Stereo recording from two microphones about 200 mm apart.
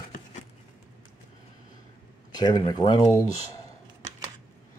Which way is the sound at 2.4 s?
20° left (ahead or behind).